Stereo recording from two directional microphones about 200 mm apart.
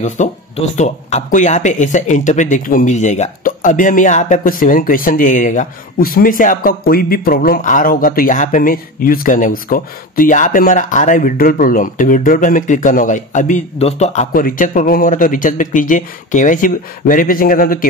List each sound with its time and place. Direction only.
0.0 s speech: 35° left (ahead or behind)